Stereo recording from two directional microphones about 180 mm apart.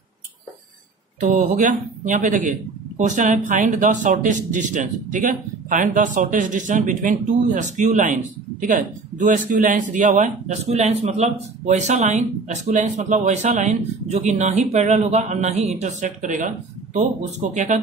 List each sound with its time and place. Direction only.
1.2 s speech: 45° right (ahead or behind)